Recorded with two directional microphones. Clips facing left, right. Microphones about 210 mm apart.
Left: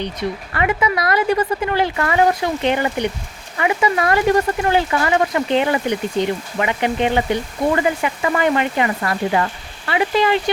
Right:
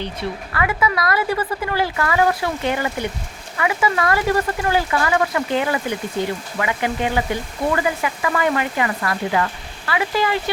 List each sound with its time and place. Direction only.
0.5 s speech: 25° left (ahead or behind)